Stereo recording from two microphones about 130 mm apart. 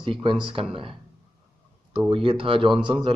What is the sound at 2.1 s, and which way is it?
Speech, 45° right (ahead or behind).